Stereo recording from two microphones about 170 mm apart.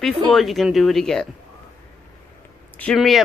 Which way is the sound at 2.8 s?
Centre (ahead or behind).